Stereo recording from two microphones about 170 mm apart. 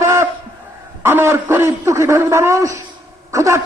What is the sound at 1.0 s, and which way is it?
A man's voice, 15° right (ahead or behind).